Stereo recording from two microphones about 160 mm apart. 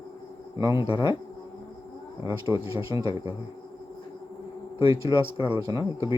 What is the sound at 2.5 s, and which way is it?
Speech, 20° right (ahead or behind).